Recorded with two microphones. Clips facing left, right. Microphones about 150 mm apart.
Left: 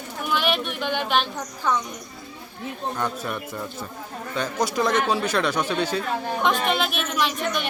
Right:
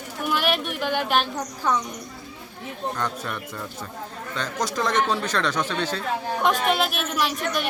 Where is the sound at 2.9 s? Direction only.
10° left (ahead or behind).